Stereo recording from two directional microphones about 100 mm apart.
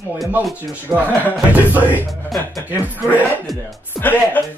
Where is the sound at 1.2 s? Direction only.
15° right (ahead or behind).